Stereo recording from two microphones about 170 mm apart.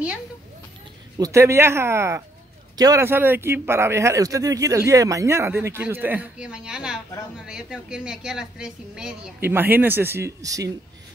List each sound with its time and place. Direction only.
1.1 s a man's voice: 20° right (ahead or behind)